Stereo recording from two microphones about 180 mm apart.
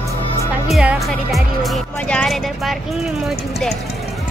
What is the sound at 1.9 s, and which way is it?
Speech, 5° left (ahead or behind).